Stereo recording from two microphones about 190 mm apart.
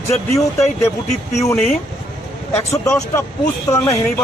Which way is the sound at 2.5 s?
15° left (ahead or behind).